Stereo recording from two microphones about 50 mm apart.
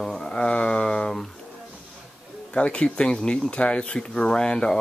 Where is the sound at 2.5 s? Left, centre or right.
Left.